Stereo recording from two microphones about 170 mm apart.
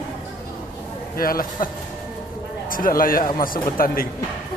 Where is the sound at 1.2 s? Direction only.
55° left (ahead or behind).